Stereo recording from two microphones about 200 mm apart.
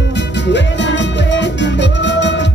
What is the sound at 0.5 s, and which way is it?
Music, 60° left (ahead or behind).